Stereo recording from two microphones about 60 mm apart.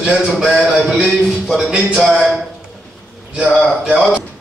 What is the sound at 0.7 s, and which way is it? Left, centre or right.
A man's voice, centre.